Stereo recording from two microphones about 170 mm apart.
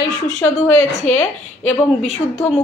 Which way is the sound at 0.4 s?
15° left (ahead or behind).